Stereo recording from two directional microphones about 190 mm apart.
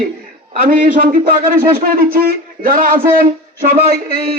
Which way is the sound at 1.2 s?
50° right (ahead or behind).